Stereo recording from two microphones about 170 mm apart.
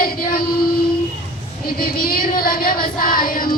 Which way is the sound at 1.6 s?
60° left (ahead or behind).